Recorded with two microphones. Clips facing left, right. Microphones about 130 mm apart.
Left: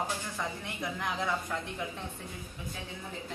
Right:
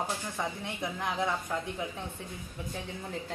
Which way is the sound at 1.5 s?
10° right (ahead or behind).